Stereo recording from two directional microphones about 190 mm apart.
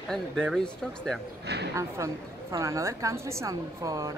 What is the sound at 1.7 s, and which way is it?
Speech, 15° right (ahead or behind).